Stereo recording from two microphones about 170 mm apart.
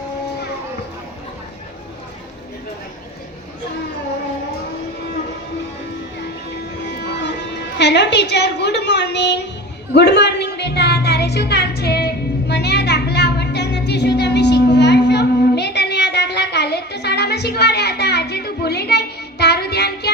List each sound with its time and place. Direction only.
6.8 s music: 90° left
9.9 s music: 80° left